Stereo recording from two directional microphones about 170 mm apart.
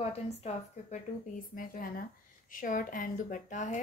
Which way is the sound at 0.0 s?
40° left (ahead or behind).